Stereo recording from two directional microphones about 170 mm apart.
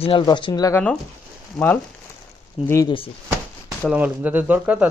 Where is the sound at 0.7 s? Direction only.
10° left (ahead or behind).